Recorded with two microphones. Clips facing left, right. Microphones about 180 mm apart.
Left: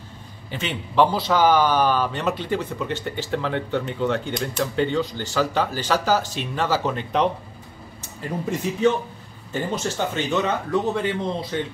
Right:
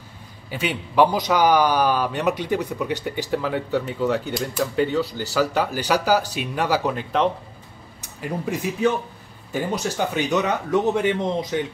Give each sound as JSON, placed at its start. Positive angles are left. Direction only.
{"t": 0.5, "sound": "speech", "side_deg": -10}